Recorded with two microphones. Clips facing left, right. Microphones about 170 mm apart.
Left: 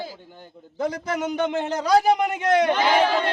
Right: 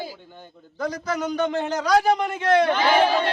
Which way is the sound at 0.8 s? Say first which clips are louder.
Left 1 dB; 25° left (ahead or behind).